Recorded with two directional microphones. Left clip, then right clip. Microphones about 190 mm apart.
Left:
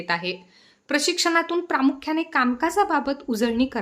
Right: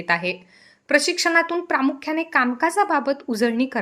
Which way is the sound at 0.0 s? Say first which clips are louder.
Right 4 dB; 15° right (ahead or behind).